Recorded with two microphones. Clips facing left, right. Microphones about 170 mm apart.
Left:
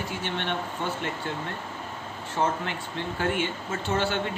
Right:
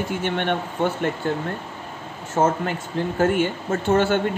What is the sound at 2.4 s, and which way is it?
Speech, 45° right (ahead or behind).